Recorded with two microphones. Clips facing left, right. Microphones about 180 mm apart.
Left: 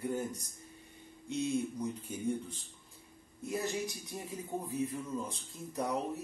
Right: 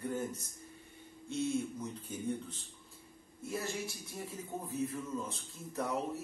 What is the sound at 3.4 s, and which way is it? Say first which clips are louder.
A man's voice: left 3 dB; 15° left (ahead or behind).